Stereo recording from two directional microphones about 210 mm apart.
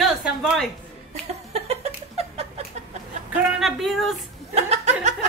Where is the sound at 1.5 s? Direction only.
30° right (ahead or behind).